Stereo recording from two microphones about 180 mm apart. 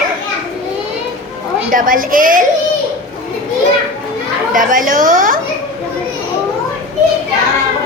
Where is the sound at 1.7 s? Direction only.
50° right (ahead or behind).